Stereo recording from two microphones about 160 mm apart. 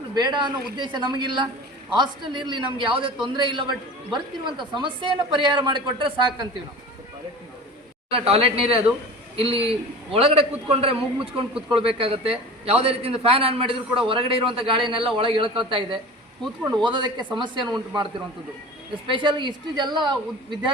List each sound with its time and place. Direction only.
0.1 s a woman's voice: 25° right (ahead or behind)
8.1 s a man's voice: 40° right (ahead or behind)